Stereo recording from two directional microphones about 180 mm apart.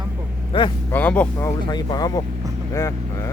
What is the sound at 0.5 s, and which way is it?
Speech, 30° left (ahead or behind).